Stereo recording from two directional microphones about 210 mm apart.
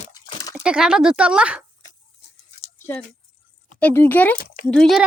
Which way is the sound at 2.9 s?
10° left (ahead or behind).